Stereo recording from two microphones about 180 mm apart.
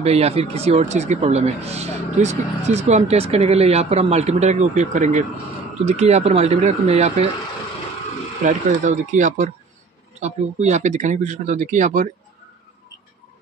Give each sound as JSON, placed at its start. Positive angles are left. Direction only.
{"t": 0.0, "sound": "speech", "side_deg": -35}
{"t": 8.5, "sound": "speech", "side_deg": -45}